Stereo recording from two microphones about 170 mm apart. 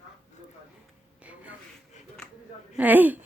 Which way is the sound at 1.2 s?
10° right (ahead or behind).